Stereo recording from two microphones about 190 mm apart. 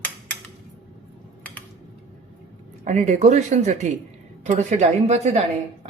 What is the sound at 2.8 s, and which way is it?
Speech, 40° right (ahead or behind).